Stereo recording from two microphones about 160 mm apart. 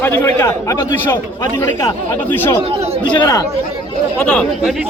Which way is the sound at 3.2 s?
25° left (ahead or behind).